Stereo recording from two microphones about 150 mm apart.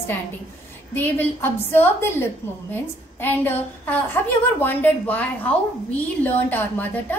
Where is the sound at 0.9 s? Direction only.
15° left (ahead or behind).